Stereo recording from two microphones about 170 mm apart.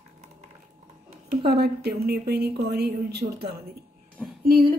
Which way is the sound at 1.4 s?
70° right (ahead or behind).